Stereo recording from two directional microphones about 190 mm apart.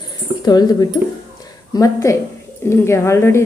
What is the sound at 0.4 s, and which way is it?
Speech, 20° left (ahead or behind).